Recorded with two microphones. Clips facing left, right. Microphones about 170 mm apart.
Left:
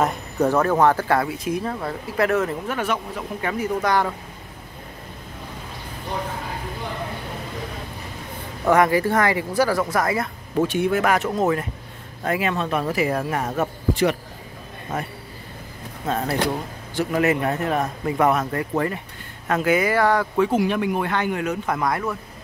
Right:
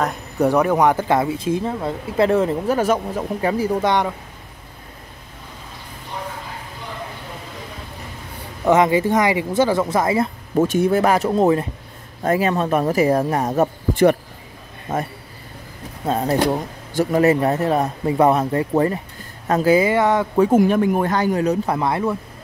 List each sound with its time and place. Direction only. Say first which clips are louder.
0.4 s speech: right 2 dB; 15° right (ahead or behind)
8.6 s speech: right 2 dB; 20° right (ahead or behind)
10.6 s speech: right 4 dB; 40° right (ahead or behind)
16.0 s speech: right 5 dB; 35° right (ahead or behind)
20.3 s speech: right 5 dB; 40° right (ahead or behind); by 22.1 s 25° right (ahead or behind)